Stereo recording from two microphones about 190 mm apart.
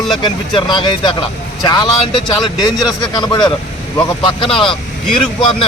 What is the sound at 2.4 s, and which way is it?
Speech, centre (ahead or behind).